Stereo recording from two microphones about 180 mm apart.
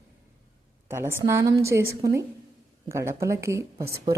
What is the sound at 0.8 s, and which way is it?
A woman's voice, 15° right (ahead or behind).